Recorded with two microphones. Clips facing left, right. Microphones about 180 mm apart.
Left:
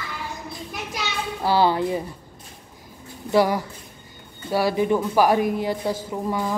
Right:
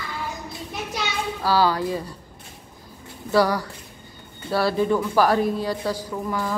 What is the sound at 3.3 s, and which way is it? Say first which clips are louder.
Speech: left 1 dB; 20° left (ahead or behind).